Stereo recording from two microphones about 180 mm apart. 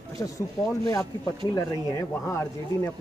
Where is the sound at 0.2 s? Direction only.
20° left (ahead or behind).